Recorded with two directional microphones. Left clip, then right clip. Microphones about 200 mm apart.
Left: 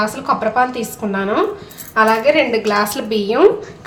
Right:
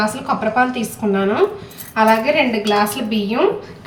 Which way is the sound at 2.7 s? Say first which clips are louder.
Even; 60° left (ahead or behind).